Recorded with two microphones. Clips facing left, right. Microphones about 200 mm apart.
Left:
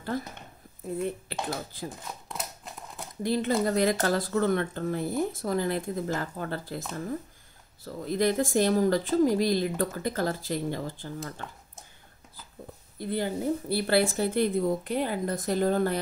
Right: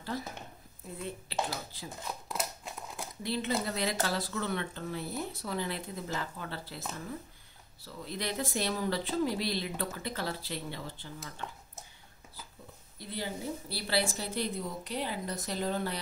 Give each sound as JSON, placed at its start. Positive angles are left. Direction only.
{"t": 0.1, "sound": "speech", "side_deg": 50}
{"t": 1.5, "sound": "speech", "side_deg": 50}
{"t": 2.2, "sound": "crumpling", "side_deg": 0}
{"t": 3.2, "sound": "speech", "side_deg": 45}
{"t": 7.8, "sound": "speech", "side_deg": 50}
{"t": 13.0, "sound": "speech", "side_deg": 50}